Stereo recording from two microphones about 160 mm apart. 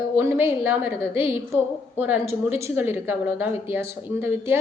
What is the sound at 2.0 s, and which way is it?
A woman's voice, 10° right (ahead or behind).